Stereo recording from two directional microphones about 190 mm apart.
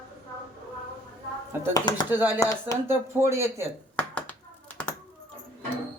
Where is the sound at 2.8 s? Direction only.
10° right (ahead or behind).